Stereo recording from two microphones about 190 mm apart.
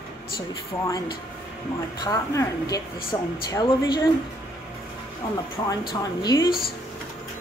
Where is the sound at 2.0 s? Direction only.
20° left (ahead or behind).